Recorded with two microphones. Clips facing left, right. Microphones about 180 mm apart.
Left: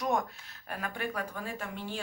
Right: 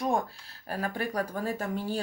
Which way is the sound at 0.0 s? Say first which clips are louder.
Right 2 dB; 30° right (ahead or behind).